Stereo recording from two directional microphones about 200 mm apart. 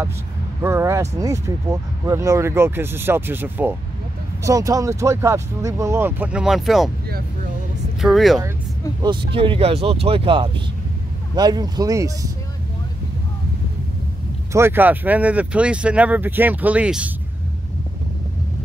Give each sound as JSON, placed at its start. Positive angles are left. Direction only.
{"t": 0.6, "sound": "speech", "side_deg": -15}
{"t": 8.0, "sound": "speech", "side_deg": 0}
{"t": 9.0, "sound": "speech", "side_deg": -25}
{"t": 14.5, "sound": "speech", "side_deg": -10}